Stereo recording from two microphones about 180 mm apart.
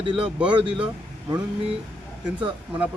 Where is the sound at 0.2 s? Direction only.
5° right (ahead or behind).